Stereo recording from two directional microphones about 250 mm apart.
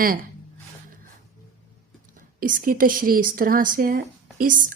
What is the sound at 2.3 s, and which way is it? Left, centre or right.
A woman's voice, right.